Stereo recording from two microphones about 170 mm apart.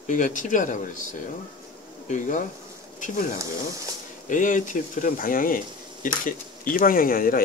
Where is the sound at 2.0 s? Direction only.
50° left (ahead or behind).